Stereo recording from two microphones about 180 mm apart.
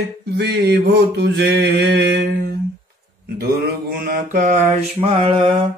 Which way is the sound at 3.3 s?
60° right (ahead or behind).